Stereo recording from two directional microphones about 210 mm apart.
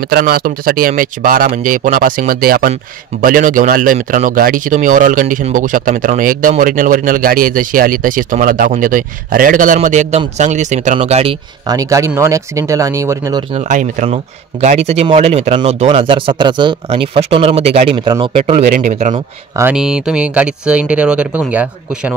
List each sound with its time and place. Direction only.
0.1 s speech: 45° right (ahead or behind); by 11.3 s 30° right (ahead or behind)
11.6 s speech: 15° right (ahead or behind)
13.6 s speech: 35° right (ahead or behind)
18.7 s speech: 35° right (ahead or behind)
19.1 s speech: 15° right (ahead or behind)
19.7 s speech: 5° right (ahead or behind)